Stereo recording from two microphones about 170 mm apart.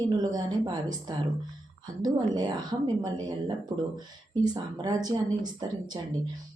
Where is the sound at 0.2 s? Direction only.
25° right (ahead or behind).